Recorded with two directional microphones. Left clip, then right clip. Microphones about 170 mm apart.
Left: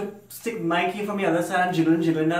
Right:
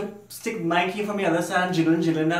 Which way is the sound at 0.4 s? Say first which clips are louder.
Right 1 dB; centre (ahead or behind).